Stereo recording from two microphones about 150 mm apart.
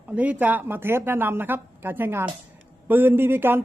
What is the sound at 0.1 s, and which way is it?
A man's voice, 10° right (ahead or behind).